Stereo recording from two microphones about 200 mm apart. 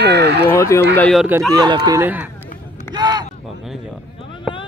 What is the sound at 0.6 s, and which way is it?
Speech, 15° left (ahead or behind).